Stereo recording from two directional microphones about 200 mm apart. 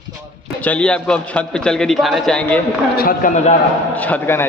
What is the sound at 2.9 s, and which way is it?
Speech, 45° left (ahead or behind).